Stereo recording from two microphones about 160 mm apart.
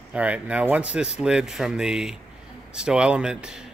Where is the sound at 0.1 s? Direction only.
10° right (ahead or behind).